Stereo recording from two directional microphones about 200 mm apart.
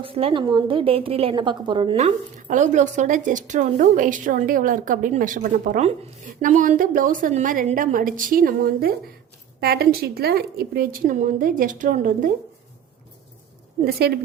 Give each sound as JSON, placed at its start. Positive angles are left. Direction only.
{"t": 0.0, "sound": "a woman's voice", "side_deg": -25}
{"t": 13.8, "sound": "a woman's voice", "side_deg": -50}